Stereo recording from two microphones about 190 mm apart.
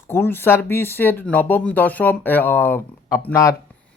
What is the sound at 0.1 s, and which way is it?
Speech, 10° left (ahead or behind).